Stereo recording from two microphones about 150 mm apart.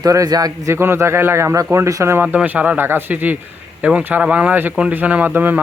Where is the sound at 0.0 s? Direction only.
25° right (ahead or behind).